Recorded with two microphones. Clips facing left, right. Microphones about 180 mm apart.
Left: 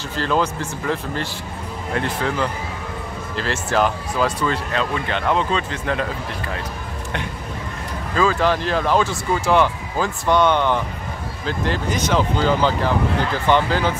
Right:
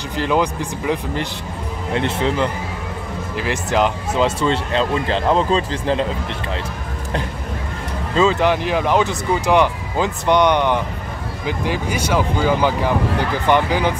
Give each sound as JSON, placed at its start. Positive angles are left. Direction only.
{"t": 0.1, "sound": "speech", "side_deg": -15}
{"t": 8.1, "sound": "speech", "side_deg": -20}